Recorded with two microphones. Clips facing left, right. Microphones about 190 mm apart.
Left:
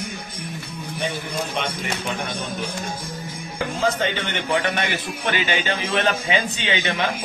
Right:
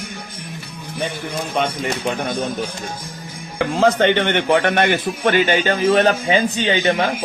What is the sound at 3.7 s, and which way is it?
A man's voice, 70° right (ahead or behind).